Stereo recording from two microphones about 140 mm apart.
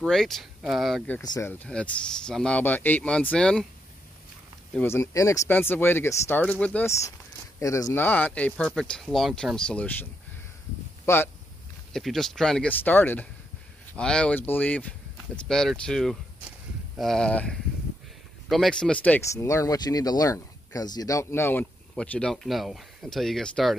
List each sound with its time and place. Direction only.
0.0 s speech: 5° left (ahead or behind)
1.4 s speech: 15° left (ahead or behind)
4.7 s speech: 20° left (ahead or behind)
11.1 s speech: 20° left (ahead or behind)
11.9 s speech: centre (ahead or behind)
19.3 s speech: 20° left (ahead or behind); by 23.8 s 5° left (ahead or behind)